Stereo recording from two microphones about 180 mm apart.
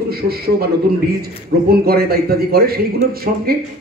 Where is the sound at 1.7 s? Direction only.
60° right (ahead or behind).